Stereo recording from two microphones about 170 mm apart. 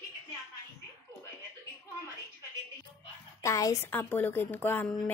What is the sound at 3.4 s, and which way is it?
A woman's voice, 20° left (ahead or behind).